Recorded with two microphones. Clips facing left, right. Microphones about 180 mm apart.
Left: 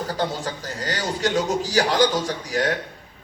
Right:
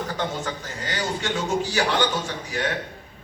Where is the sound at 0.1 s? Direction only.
35° left (ahead or behind).